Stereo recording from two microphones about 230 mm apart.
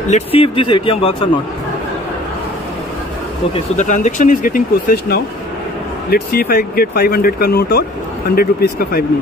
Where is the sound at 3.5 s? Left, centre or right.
Left.